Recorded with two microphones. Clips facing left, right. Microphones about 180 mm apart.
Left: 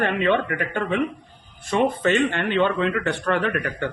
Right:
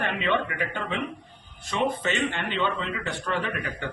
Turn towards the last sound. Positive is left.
turn(degrees=60)  # may be behind; listen again after turning